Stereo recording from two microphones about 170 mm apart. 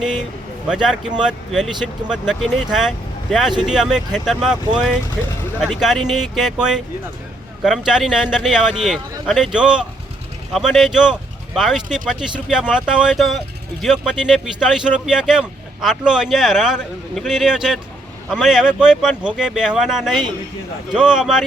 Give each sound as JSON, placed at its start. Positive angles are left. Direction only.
{"t": 0.7, "sound": "speech", "side_deg": -5}